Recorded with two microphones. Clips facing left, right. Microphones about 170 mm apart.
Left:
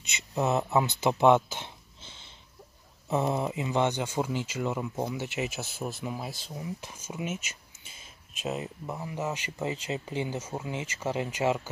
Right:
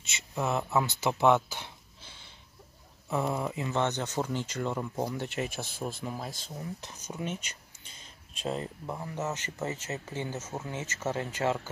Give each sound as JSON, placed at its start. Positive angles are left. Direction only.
{"t": 0.0, "sound": "speech", "side_deg": 20}